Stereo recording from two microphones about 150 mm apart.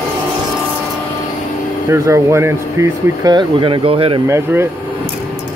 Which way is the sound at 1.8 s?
20° right (ahead or behind).